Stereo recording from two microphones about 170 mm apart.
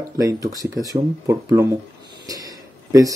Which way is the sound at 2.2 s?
20° right (ahead or behind).